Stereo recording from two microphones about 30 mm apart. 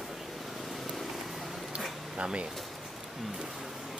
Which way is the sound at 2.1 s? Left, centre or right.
Right.